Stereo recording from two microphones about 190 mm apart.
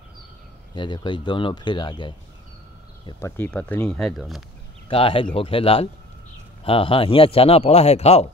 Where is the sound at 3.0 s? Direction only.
15° left (ahead or behind).